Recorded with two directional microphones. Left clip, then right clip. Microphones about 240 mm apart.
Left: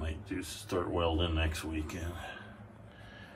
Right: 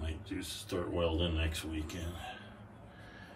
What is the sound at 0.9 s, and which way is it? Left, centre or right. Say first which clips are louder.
Speech: even; centre.